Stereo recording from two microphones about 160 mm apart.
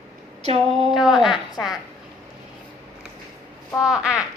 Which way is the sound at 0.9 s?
Centre (ahead or behind).